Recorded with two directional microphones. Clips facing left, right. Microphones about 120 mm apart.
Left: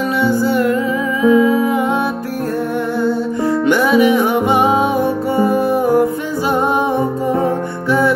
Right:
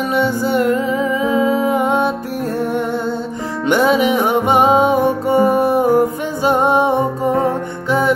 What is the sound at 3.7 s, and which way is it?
Music, 20° right (ahead or behind).